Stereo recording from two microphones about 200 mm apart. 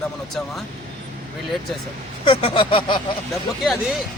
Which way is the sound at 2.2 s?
25° left (ahead or behind).